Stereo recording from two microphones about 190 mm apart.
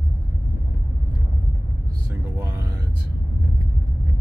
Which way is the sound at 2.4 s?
15° right (ahead or behind).